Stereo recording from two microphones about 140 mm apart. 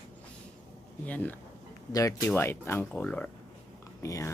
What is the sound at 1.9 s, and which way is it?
Speech, 25° left (ahead or behind).